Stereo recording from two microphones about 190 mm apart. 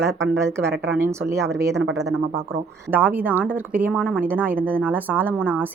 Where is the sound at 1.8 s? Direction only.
65° right (ahead or behind).